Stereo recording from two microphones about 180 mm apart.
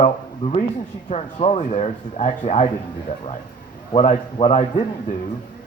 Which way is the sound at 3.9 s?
35° left (ahead or behind).